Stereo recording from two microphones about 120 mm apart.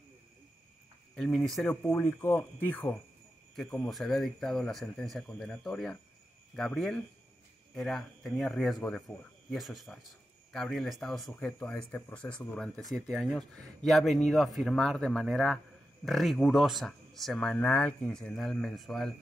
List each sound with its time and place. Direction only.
1.1 s speech: 5° left (ahead or behind)
1.9 s speech: 20° left (ahead or behind)
3.9 s speech: centre (ahead or behind)